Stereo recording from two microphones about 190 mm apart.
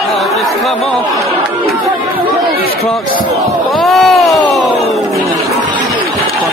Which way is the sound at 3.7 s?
Centre (ahead or behind).